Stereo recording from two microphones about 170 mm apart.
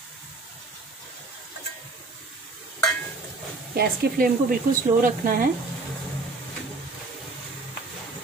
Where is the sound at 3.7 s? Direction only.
60° right (ahead or behind).